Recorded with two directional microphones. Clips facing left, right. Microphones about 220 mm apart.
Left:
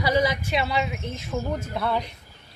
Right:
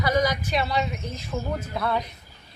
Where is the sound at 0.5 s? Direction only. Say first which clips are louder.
Even; 5° left (ahead or behind).